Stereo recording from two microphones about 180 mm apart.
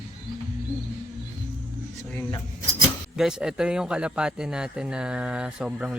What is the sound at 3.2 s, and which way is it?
Speech, 5° right (ahead or behind).